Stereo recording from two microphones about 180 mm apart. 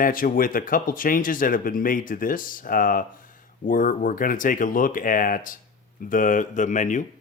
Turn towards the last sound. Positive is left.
turn(degrees=45)  # may be behind; listen again after turning